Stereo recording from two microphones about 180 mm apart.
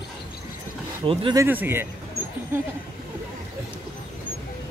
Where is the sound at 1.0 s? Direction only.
25° right (ahead or behind).